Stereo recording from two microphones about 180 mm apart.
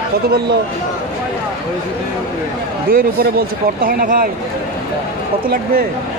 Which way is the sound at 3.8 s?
50° right (ahead or behind).